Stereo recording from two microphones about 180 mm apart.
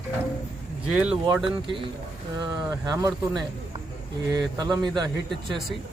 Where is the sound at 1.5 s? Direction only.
30° right (ahead or behind).